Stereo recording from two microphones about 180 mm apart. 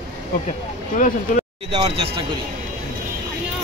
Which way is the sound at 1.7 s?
25° right (ahead or behind).